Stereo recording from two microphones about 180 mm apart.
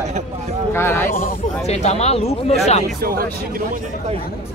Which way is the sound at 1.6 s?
35° left (ahead or behind).